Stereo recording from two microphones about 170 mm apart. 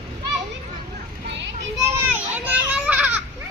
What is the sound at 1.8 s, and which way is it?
Children playing, 10° right (ahead or behind).